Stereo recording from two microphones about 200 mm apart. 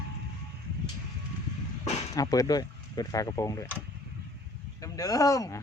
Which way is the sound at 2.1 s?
15° left (ahead or behind).